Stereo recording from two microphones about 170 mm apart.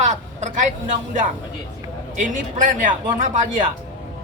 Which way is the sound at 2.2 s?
50° right (ahead or behind).